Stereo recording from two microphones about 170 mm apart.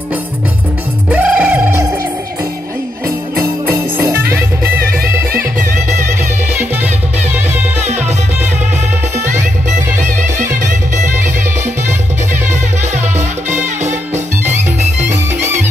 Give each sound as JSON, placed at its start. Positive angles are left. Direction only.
{"t": 1.1, "sound": "music", "side_deg": -10}
{"t": 3.3, "sound": "music", "side_deg": -15}
{"t": 4.7, "sound": "music", "side_deg": -60}